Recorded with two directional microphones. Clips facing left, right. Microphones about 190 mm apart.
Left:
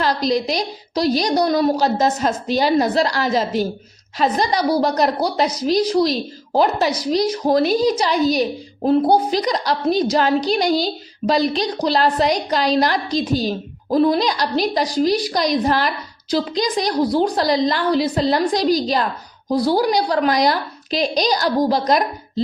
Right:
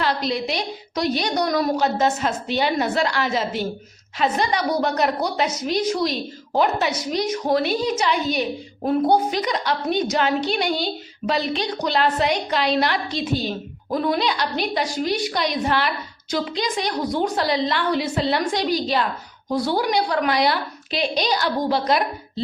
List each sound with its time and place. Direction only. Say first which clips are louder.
0.0 s a woman's voice: left 4 dB; 40° left (ahead or behind)